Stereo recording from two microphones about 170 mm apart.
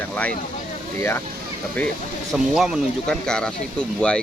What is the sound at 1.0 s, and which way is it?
Speech, 15° left (ahead or behind).